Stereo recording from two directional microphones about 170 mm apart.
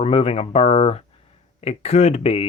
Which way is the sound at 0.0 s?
35° left (ahead or behind).